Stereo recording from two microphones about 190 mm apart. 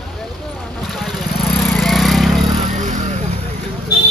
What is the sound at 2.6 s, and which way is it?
Vehicle, 40° right (ahead or behind).